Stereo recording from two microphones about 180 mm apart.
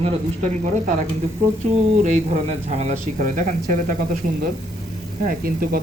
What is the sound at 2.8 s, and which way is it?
Speech, 40° right (ahead or behind).